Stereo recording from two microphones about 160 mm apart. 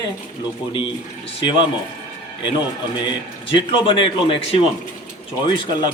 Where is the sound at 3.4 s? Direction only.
30° left (ahead or behind).